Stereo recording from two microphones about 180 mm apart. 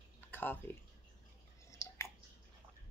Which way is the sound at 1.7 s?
15° left (ahead or behind).